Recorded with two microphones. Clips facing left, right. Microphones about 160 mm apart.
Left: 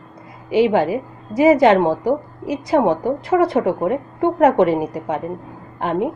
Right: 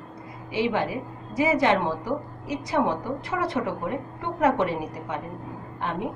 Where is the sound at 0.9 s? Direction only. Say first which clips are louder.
Left 8 dB; 70° left (ahead or behind).